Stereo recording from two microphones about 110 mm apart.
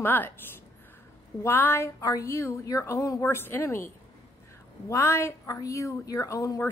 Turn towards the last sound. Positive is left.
turn(degrees=30)  # may be behind; listen again after turning